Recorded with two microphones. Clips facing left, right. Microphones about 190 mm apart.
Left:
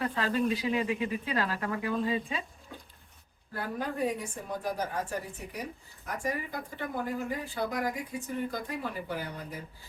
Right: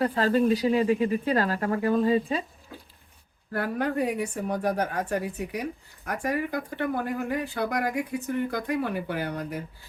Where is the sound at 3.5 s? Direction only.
70° right (ahead or behind).